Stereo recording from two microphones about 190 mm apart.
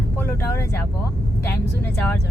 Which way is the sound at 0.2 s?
10° left (ahead or behind).